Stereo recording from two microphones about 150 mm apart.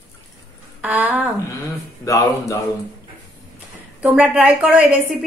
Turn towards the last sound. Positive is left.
turn(degrees=-5)  # may be behind; listen again after turning